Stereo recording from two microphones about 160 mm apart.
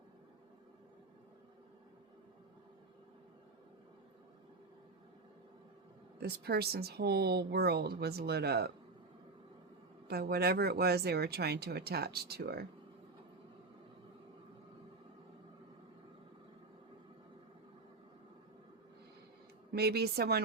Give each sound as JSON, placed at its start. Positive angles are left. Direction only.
{"t": 6.1, "sound": "speech", "side_deg": -80}
{"t": 10.1, "sound": "speech", "side_deg": -80}
{"t": 19.7, "sound": "speech", "side_deg": -80}